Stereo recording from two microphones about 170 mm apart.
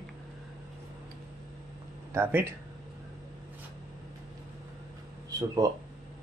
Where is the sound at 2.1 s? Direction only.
15° right (ahead or behind).